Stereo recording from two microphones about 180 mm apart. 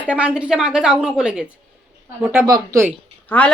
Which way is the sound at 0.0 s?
5° right (ahead or behind).